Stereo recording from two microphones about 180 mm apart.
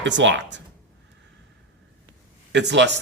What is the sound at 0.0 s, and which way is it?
Speech, 90° right.